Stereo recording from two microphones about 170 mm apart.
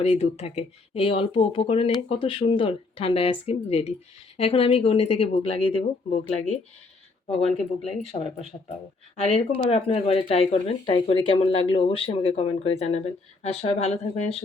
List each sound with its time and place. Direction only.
0.0 s speech: 40° left (ahead or behind)
7.8 s speech: 40° left (ahead or behind)